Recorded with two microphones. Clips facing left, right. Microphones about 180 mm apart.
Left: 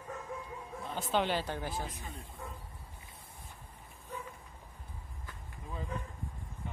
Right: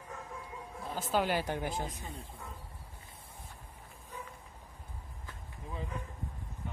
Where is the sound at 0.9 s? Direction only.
5° right (ahead or behind).